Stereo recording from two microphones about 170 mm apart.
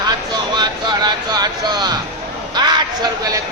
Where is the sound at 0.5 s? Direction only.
25° right (ahead or behind).